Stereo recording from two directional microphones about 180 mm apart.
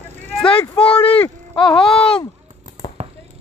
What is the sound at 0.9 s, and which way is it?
Speech, 30° left (ahead or behind).